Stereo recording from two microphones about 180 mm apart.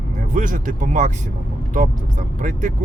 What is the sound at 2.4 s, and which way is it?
Speech, 45° right (ahead or behind).